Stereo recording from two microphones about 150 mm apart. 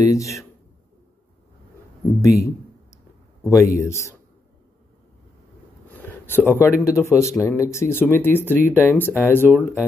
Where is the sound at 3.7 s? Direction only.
20° left (ahead or behind).